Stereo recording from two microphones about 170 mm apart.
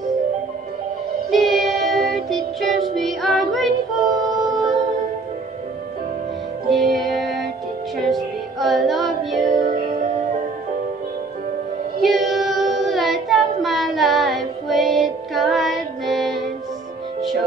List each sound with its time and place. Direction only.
1.3 s music: centre (ahead or behind)
4.1 s singing: 25° right (ahead or behind)
6.7 s music: centre (ahead or behind)
12.0 s child singing: centre (ahead or behind)